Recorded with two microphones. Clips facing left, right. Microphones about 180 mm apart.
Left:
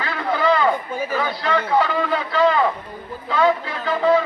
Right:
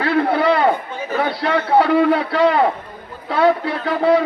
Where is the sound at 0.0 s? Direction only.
60° right (ahead or behind).